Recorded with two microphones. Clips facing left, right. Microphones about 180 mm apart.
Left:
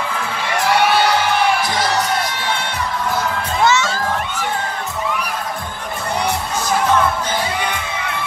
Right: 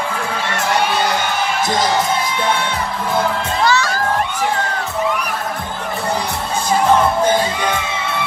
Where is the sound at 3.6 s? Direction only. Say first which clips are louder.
Left 1 dB; 20° left (ahead or behind).